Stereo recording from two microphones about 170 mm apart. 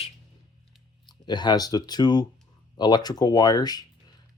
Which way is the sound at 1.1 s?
25° left (ahead or behind).